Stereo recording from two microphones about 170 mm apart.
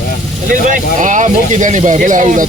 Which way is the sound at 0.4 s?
50° right (ahead or behind).